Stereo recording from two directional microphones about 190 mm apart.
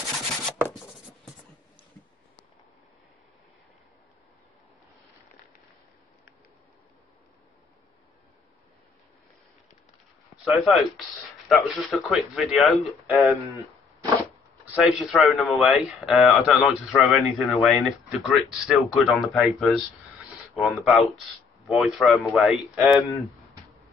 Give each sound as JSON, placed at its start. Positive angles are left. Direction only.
{"t": 10.3, "sound": "a man's voice", "side_deg": 0}
{"t": 14.6, "sound": "a man's voice", "side_deg": -5}